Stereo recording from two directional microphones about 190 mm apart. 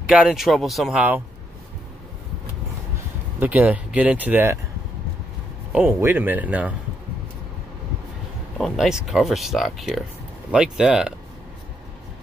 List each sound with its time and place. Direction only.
0.1 s speech: centre (ahead or behind)
3.3 s speech: 10° right (ahead or behind)
5.7 s speech: 5° right (ahead or behind)
8.5 s speech: centre (ahead or behind)